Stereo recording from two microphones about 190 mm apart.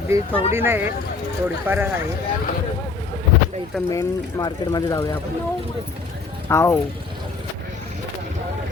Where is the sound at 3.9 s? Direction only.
20° left (ahead or behind).